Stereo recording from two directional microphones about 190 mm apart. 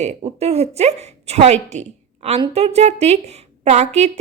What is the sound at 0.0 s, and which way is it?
A woman's voice, 35° right (ahead or behind).